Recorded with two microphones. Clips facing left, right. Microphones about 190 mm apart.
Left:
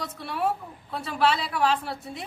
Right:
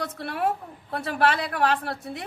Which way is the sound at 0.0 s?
60° right (ahead or behind).